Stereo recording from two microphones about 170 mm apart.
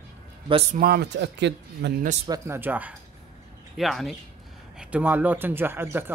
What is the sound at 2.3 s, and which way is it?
Speech, 15° right (ahead or behind).